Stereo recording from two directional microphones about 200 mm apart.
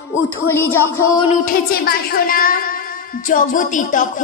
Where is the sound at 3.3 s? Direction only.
40° left (ahead or behind).